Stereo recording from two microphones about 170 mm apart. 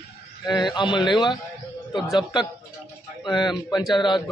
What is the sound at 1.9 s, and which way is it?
Speech, centre (ahead or behind).